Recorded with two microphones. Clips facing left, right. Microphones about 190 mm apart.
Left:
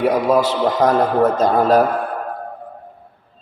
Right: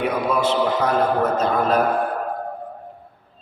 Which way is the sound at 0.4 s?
40° left (ahead or behind).